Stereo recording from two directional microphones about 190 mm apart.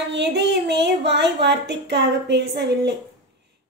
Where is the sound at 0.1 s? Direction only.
65° right (ahead or behind).